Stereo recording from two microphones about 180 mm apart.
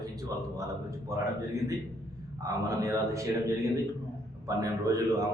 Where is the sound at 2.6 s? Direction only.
20° right (ahead or behind).